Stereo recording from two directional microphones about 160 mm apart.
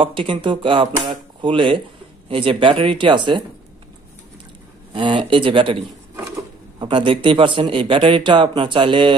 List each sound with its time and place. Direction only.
0.0 s speech: 35° right (ahead or behind)
4.9 s speech: 30° right (ahead or behind)